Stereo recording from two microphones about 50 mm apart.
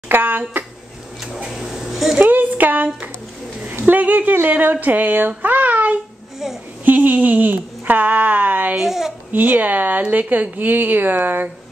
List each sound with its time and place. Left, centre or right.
0.1 s speech: right
1.2 s speech: centre
2.2 s speech: right
6.4 s a child's voice: centre
6.8 s speech: right
8.7 s a child's voice: centre
9.3 s speech: right